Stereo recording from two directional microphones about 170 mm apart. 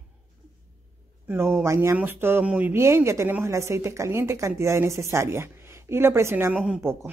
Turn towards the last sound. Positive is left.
turn(degrees=-15)  # may be behind; listen again after turning